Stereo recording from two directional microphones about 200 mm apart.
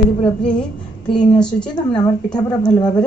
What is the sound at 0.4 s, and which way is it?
A woman's voice, 5° left (ahead or behind).